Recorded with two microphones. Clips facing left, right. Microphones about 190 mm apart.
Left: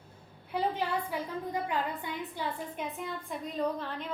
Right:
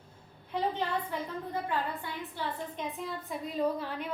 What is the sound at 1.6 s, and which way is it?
A woman's voice, 15° left (ahead or behind).